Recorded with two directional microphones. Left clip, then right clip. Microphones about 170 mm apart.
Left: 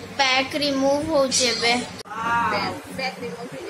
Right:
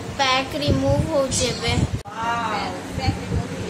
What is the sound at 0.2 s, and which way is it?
A child's voice, 15° left (ahead or behind).